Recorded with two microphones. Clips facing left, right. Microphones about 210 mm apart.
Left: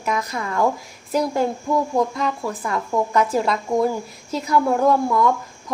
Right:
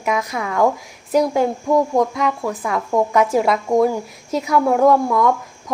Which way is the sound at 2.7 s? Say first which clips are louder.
Right 3 dB; centre (ahead or behind).